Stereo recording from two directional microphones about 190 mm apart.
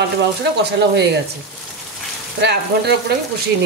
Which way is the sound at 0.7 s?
60° right (ahead or behind).